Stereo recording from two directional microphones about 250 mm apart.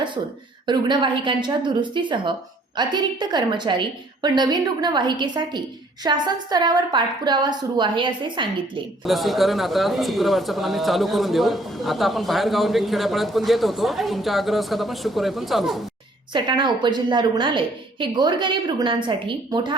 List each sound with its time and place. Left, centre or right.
0.7 s a woman's voice: centre
9.0 s speech: centre
16.3 s a woman's voice: centre